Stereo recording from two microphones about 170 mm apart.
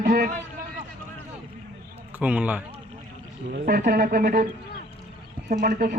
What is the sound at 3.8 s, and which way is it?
Speech, 60° right (ahead or behind).